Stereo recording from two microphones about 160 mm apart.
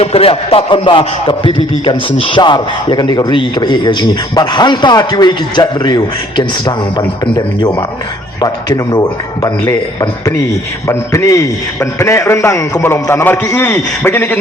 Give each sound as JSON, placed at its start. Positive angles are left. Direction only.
{"t": 0.0, "sound": "a man's voice", "side_deg": 35}